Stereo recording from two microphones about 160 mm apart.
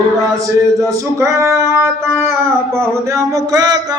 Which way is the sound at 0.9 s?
20° right (ahead or behind).